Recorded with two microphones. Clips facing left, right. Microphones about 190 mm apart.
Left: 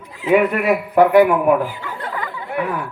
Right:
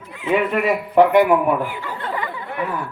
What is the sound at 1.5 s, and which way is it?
Speech, 40° left (ahead or behind).